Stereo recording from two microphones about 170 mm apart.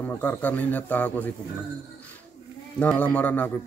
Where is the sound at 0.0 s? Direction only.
10° left (ahead or behind).